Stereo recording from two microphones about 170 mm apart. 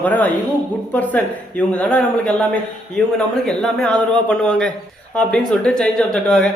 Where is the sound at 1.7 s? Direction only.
10° left (ahead or behind).